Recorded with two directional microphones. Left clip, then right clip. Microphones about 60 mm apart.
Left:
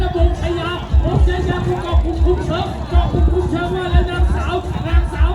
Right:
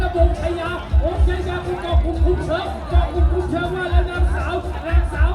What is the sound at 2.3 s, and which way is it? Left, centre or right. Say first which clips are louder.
Music: left 4 dB; centre.